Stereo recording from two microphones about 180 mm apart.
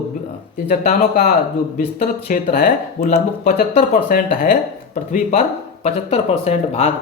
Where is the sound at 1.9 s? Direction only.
50° left (ahead or behind).